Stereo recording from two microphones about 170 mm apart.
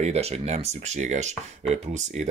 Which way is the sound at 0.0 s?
40° right (ahead or behind).